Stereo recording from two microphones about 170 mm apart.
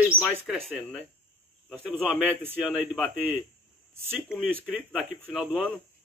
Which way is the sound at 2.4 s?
10° right (ahead or behind).